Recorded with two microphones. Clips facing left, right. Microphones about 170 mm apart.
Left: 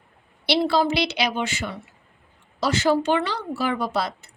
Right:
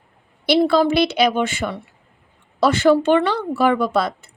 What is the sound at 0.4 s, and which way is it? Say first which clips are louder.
Speech: right 5 dB; 50° right (ahead or behind).